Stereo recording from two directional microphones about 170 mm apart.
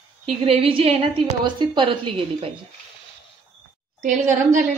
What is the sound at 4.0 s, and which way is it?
Speech, 50° right (ahead or behind).